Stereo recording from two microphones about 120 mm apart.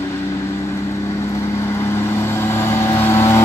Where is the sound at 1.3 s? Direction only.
20° left (ahead or behind).